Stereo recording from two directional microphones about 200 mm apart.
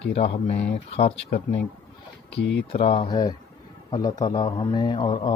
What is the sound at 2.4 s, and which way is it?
Speech, 60° left (ahead or behind).